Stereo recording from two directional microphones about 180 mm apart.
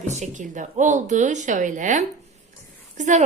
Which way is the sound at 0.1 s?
40° right (ahead or behind).